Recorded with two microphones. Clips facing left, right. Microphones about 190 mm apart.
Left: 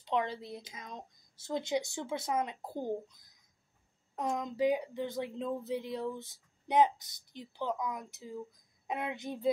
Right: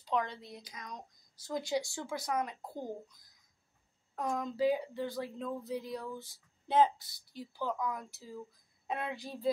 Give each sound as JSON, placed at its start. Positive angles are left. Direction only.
{"t": 0.0, "sound": "speech", "side_deg": 25}
{"t": 4.1, "sound": "speech", "side_deg": 20}